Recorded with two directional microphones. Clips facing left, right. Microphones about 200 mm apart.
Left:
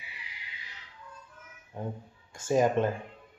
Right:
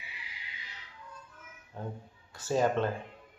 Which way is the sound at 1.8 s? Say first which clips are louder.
Left 3 dB; 15° left (ahead or behind).